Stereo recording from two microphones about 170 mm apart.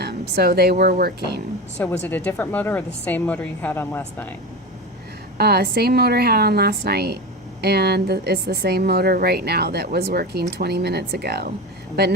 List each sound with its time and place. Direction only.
0.0 s speech: 70° right (ahead or behind)
1.8 s a woman's voice: 10° left (ahead or behind)
5.4 s a woman's voice: 70° right (ahead or behind)